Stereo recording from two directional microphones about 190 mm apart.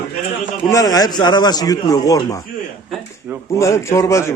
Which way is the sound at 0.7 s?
20° left (ahead or behind).